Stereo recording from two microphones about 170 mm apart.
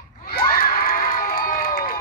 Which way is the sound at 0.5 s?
55° left (ahead or behind).